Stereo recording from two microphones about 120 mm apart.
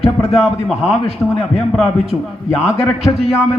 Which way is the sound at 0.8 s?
60° left (ahead or behind).